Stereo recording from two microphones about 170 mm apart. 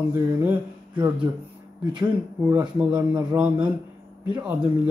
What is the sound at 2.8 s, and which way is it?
Speech, 5° right (ahead or behind).